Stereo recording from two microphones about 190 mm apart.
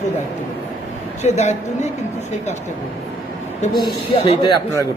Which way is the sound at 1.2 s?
35° left (ahead or behind).